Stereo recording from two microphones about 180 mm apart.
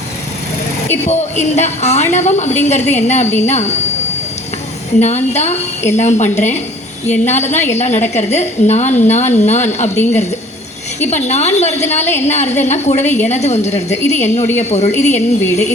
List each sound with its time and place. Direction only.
0.9 s a woman's voice: 40° left (ahead or behind)
4.9 s a woman's voice: 40° left (ahead or behind)
11.1 s a woman's voice: 40° left (ahead or behind)